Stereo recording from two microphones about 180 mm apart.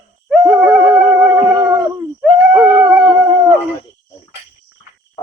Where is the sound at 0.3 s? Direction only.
5° right (ahead or behind).